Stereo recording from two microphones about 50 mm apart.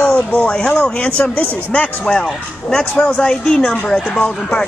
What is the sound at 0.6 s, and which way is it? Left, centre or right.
Speech, centre.